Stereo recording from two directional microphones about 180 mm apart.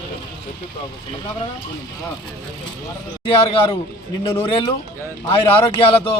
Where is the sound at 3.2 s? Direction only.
30° left (ahead or behind).